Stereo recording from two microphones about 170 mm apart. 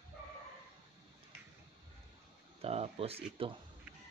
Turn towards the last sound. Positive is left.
turn(degrees=-35)  # may be behind; listen again after turning